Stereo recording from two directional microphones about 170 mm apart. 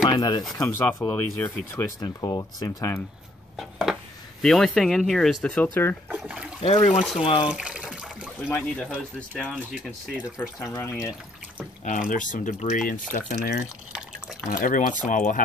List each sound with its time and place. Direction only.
0.1 s speech: 25° left (ahead or behind)
3.5 s a sound: centre (ahead or behind)
4.4 s speech: centre (ahead or behind)
6.0 s speech: 5° right (ahead or behind)
6.6 s speech: 40° left (ahead or behind)
7.4 s water: 5° right (ahead or behind)
8.5 s speech: 10° left (ahead or behind)
9.4 s speech: centre (ahead or behind)
10.4 s speech: 15° left (ahead or behind)
12.1 s speech: 50° left (ahead or behind)